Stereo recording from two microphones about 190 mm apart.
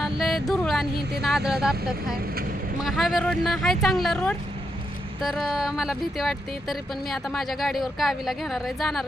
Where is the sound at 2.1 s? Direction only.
50° right (ahead or behind).